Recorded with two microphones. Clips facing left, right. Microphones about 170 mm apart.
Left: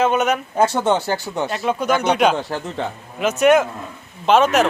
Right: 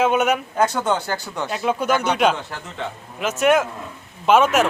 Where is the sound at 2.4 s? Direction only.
35° left (ahead or behind).